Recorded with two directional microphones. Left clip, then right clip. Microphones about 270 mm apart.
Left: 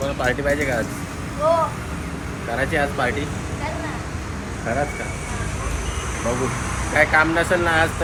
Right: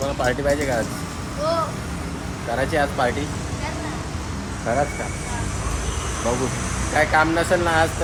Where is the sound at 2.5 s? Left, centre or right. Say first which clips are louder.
Even; centre.